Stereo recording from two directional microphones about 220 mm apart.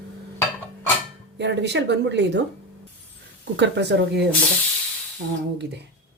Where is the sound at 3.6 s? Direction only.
50° right (ahead or behind).